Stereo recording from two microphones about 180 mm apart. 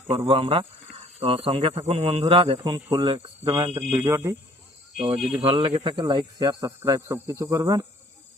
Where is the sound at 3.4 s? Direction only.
15° right (ahead or behind).